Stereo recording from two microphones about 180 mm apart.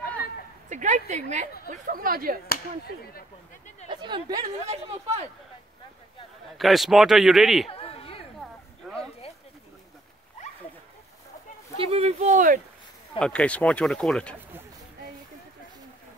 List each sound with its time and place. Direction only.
0.7 s a woman's voice: 45° right (ahead or behind)
1.7 s a woman's voice: 50° right (ahead or behind)
3.9 s speech: 25° right (ahead or behind)
6.5 s a man's voice: centre (ahead or behind)
7.6 s a sound: 30° left (ahead or behind)
8.4 s a sound: centre (ahead or behind)
11.7 s speech: 30° right (ahead or behind)
13.2 s a man's voice: 5° left (ahead or behind)